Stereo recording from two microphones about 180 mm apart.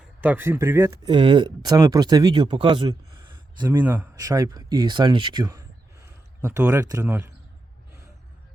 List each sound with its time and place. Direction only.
0.2 s speech: 10° right (ahead or behind)
1.0 s speech: 25° right (ahead or behind)